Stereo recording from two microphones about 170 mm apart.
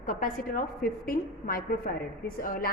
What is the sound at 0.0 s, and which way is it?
A woman's voice, 50° left (ahead or behind).